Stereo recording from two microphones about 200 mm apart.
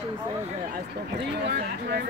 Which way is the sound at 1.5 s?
55° right (ahead or behind).